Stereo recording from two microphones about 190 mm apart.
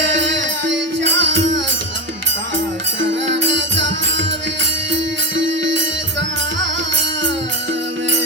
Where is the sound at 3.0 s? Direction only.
75° right (ahead or behind).